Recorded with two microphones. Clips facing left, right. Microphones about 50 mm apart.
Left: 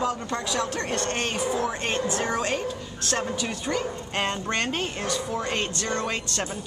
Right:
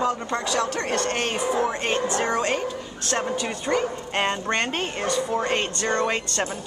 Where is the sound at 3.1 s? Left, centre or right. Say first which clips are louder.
Right 3 dB; centre.